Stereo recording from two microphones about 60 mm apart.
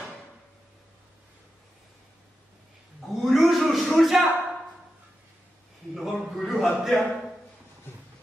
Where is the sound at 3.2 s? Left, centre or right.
Centre.